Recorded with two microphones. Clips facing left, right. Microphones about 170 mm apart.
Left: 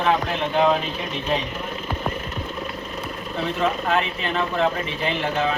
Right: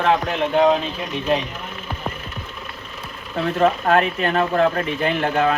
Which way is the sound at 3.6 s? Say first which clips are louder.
Right 6 dB; 50° right (ahead or behind).